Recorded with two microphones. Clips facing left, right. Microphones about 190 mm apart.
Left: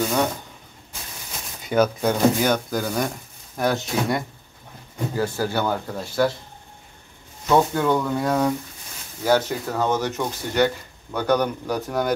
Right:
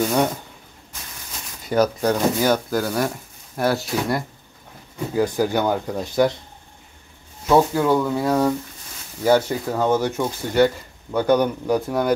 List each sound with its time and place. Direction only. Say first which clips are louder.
1.7 s speech: right 1 dB; centre (ahead or behind)
5.1 s speech: right 5 dB; 15° right (ahead or behind)
7.4 s speech: right 2 dB; 5° right (ahead or behind)